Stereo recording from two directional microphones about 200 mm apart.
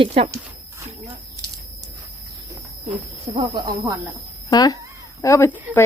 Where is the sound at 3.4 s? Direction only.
20° right (ahead or behind).